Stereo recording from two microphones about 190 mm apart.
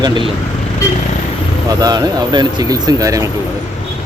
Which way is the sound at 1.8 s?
20° right (ahead or behind).